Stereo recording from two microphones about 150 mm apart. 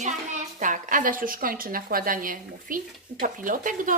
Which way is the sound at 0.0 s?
55° right (ahead or behind).